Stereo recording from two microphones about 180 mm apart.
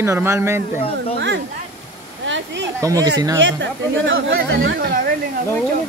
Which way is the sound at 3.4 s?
90° right.